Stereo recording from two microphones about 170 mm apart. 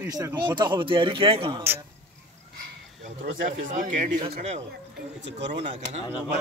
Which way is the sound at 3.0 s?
50° right (ahead or behind).